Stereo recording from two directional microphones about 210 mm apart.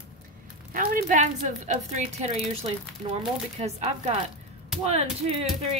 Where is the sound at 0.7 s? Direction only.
40° right (ahead or behind).